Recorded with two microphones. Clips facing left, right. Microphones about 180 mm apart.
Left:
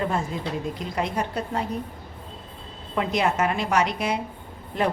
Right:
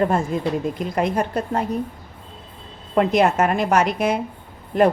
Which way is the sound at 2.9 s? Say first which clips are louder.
Right 7 dB; 50° right (ahead or behind).